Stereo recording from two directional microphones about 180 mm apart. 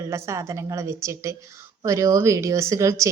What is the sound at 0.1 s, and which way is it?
A woman's voice, 15° right (ahead or behind).